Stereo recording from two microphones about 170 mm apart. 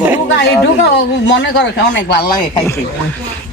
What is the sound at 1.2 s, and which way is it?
Speech, 90° left.